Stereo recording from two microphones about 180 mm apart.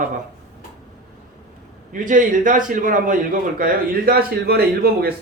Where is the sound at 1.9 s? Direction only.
45° right (ahead or behind).